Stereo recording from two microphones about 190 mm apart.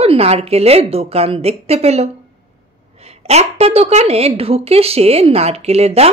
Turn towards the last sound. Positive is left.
turn(degrees=-35)  # may be behind; listen again after turning